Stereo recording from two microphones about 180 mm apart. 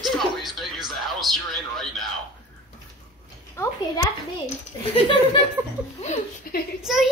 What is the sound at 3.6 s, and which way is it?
Speech, 15° left (ahead or behind).